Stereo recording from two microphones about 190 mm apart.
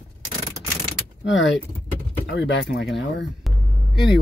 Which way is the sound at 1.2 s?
75° left (ahead or behind).